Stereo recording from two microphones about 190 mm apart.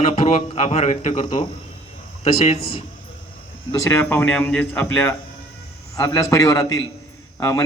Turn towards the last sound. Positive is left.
turn(degrees=15)  # may be behind; listen again after turning